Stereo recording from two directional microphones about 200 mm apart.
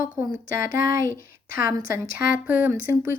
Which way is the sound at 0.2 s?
15° right (ahead or behind).